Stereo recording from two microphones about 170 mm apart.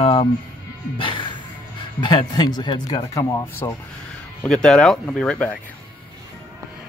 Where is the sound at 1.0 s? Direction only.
30° left (ahead or behind).